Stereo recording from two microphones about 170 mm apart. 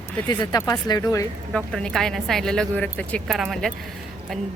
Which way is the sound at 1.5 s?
5° left (ahead or behind).